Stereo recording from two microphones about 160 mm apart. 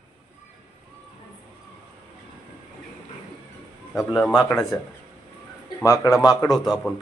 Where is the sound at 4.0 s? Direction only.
5° left (ahead or behind).